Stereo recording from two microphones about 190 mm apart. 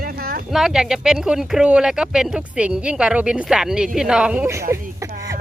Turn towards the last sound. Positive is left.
turn(degrees=-15)  # may be behind; listen again after turning